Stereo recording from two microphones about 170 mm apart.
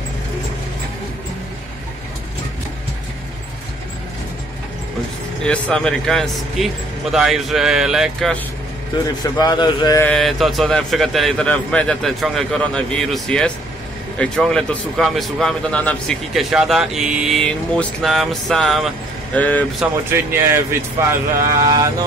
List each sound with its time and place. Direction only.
5.4 s speech: 5° left (ahead or behind)
9.2 s a man's voice: 25° left (ahead or behind)
10.0 s speech: centre (ahead or behind)
20.1 s speech: 15° right (ahead or behind)